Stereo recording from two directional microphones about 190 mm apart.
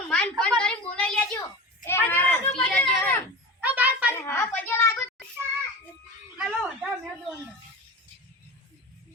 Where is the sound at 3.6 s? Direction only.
10° right (ahead or behind).